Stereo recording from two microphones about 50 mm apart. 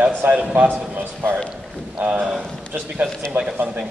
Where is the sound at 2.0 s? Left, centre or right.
Right.